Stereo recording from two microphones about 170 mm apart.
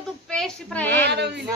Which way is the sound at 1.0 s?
80° right.